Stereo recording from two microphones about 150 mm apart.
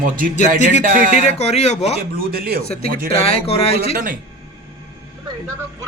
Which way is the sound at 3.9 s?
70° right (ahead or behind).